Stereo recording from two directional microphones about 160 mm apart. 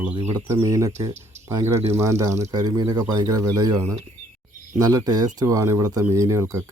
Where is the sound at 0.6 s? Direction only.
20° right (ahead or behind).